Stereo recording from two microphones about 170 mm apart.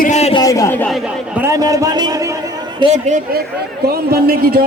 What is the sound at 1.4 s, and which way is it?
Speech, 20° right (ahead or behind).